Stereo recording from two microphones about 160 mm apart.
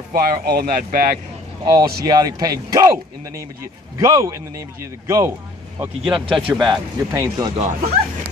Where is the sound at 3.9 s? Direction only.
25° right (ahead or behind).